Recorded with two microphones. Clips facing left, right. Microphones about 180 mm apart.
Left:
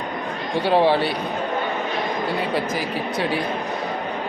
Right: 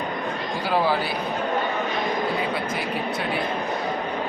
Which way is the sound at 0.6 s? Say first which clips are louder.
Left 5 dB; 30° left (ahead or behind).